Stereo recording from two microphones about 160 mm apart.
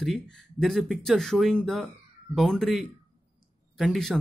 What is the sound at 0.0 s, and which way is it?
Speech, centre (ahead or behind).